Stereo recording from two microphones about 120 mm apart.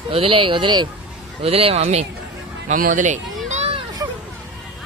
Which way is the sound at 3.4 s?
70° right (ahead or behind).